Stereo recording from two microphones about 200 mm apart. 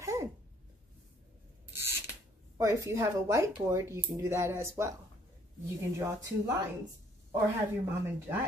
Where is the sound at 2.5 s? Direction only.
15° right (ahead or behind).